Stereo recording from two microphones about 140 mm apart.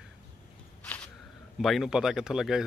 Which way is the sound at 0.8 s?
10° left (ahead or behind).